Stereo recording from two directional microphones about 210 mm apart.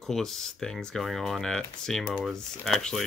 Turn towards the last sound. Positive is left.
turn(degrees=0)  # may be behind; listen again after turning